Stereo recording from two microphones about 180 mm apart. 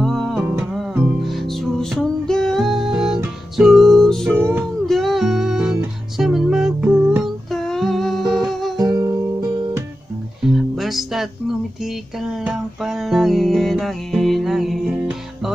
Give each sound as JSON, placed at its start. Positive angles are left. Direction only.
{"t": 0.0, "sound": "music", "side_deg": 0}
{"t": 8.7, "sound": "music", "side_deg": -20}
{"t": 10.4, "sound": "music", "side_deg": 0}